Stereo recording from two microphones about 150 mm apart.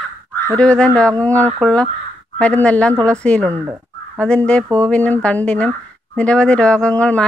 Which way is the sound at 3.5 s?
15° right (ahead or behind).